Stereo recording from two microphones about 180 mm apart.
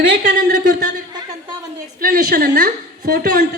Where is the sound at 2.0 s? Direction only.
50° right (ahead or behind).